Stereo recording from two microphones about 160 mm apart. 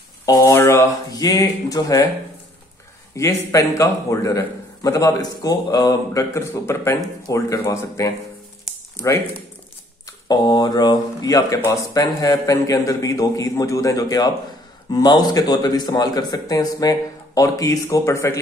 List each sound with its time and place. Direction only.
0.2 s speech: 20° left (ahead or behind)
3.2 s speech: 20° left (ahead or behind)